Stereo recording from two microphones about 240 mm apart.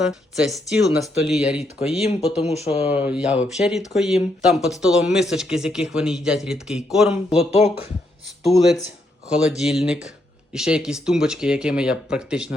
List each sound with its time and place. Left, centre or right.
0.0 s speech: centre
2.4 s speech: left
2.9 s speech: centre
7.3 s speech: left
9.4 s speech: centre